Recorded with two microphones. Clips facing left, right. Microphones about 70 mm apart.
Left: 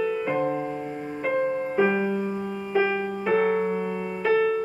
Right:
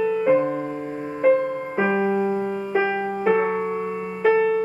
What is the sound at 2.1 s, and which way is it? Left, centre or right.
Music, right.